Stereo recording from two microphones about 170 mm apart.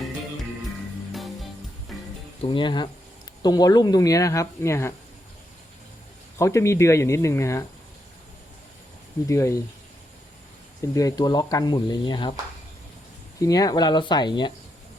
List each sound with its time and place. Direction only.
1.1 s music: centre (ahead or behind)
2.4 s speech: 30° left (ahead or behind)
6.4 s speech: 15° left (ahead or behind)
9.2 s speech: 20° left (ahead or behind)
10.9 s speech: 20° left (ahead or behind)
13.4 s speech: 20° left (ahead or behind)